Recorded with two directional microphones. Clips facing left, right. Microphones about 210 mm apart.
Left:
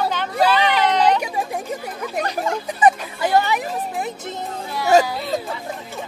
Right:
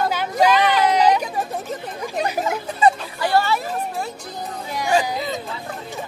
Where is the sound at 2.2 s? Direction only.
10° right (ahead or behind).